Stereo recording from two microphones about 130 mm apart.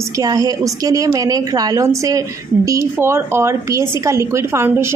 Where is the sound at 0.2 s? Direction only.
30° right (ahead or behind).